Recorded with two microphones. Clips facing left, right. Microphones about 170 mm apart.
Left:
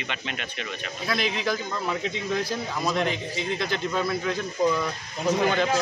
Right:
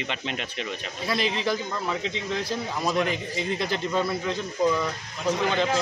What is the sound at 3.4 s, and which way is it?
Speech, 35° right (ahead or behind).